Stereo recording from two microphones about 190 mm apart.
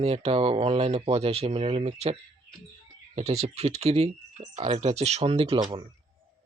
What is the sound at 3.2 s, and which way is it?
Speech, 35° right (ahead or behind).